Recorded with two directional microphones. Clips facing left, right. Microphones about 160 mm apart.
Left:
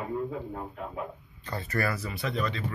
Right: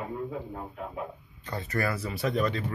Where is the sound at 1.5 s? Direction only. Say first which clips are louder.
Even; 20° right (ahead or behind).